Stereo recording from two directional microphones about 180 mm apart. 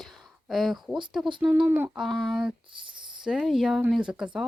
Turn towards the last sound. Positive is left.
turn(degrees=-5)  # may be behind; listen again after turning